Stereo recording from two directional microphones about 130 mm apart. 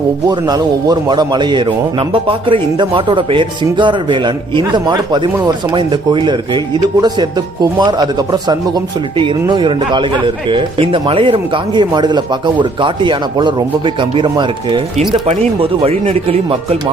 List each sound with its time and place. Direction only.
0.3 s a man's voice: 30° right (ahead or behind)
15.3 s speech: 50° right (ahead or behind)